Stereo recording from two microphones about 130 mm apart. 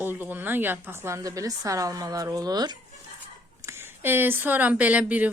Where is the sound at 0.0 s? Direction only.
15° right (ahead or behind); by 2.7 s 30° right (ahead or behind).